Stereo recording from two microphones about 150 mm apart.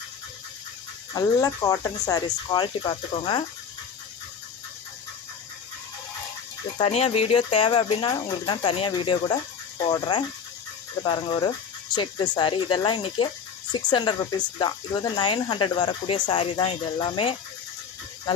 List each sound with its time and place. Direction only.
1.1 s speech: 25° left (ahead or behind)
6.7 s speech: 40° left (ahead or behind)